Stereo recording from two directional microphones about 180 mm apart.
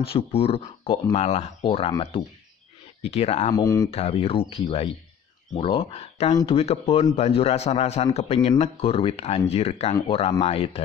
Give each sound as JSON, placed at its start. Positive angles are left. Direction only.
{"t": 0.0, "sound": "a man's voice", "side_deg": 30}
{"t": 3.5, "sound": "speech", "side_deg": 20}
{"t": 3.9, "sound": "a man's voice", "side_deg": 35}